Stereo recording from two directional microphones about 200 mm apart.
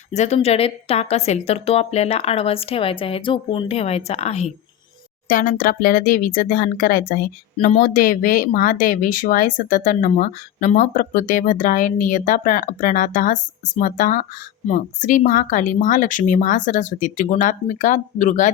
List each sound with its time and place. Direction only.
0.1 s speech: 35° left (ahead or behind)
5.3 s speech: 45° left (ahead or behind)